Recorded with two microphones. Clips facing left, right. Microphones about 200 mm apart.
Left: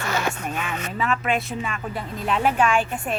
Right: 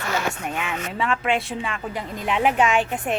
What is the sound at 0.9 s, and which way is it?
A woman's voice, 25° right (ahead or behind).